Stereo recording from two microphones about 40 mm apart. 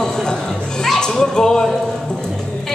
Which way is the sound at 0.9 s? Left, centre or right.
Centre.